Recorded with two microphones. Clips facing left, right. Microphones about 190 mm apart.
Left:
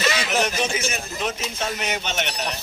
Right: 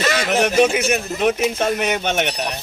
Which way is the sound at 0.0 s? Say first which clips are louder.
Right 5 dB; 50° right (ahead or behind).